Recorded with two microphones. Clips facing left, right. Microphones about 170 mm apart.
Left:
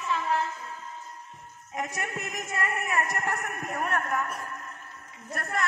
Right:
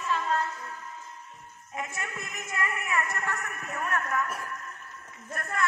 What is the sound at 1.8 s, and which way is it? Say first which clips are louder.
Speech: left 3 dB; 40° left (ahead or behind).